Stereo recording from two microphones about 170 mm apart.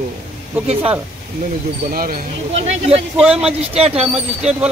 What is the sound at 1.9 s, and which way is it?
Speech, 60° right (ahead or behind).